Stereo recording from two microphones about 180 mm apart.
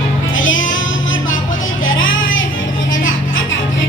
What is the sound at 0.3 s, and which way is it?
Music, 90° left.